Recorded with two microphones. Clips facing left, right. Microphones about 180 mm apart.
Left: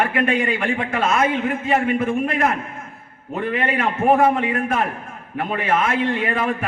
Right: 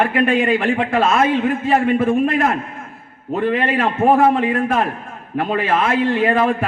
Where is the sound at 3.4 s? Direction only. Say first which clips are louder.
Right 3 dB; 35° right (ahead or behind).